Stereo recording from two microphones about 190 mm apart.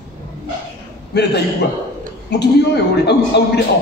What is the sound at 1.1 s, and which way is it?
Speech, 60° left (ahead or behind).